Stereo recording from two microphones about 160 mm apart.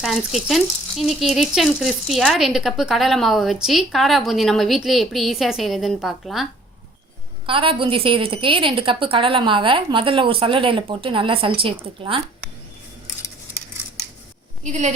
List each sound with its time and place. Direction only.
0.0 s speech: centre (ahead or behind)
7.4 s a woman's voice: 35° right (ahead or behind)
14.6 s a woman's voice: 50° right (ahead or behind)